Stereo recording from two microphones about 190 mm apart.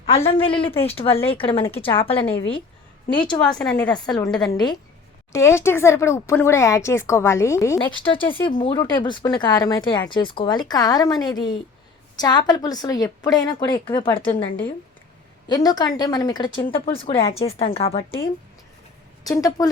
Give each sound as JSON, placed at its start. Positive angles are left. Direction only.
{"t": 0.0, "sound": "speech", "side_deg": 30}
{"t": 3.7, "sound": "a woman's voice", "side_deg": 5}
{"t": 4.4, "sound": "speech", "side_deg": 20}
{"t": 15.4, "sound": "speech", "side_deg": 20}
{"t": 19.2, "sound": "speech", "side_deg": 20}